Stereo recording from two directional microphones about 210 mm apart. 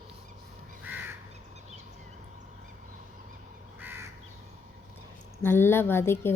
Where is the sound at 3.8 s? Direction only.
10° right (ahead or behind).